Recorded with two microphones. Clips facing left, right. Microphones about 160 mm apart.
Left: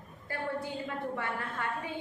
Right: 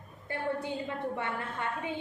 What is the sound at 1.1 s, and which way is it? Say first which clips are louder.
Speech: right 1 dB; 20° right (ahead or behind).